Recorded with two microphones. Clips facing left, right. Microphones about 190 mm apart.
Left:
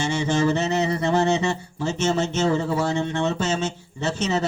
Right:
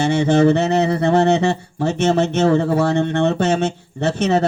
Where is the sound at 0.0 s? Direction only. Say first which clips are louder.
Right 7 dB; 60° right (ahead or behind).